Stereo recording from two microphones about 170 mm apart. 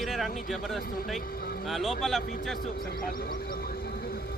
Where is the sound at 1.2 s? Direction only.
60° left (ahead or behind).